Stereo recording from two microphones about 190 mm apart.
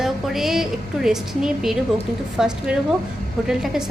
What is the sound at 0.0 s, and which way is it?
A woman's voice, centre (ahead or behind).